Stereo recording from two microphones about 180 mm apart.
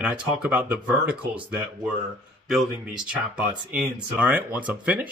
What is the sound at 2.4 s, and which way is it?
Speech, 5° right (ahead or behind).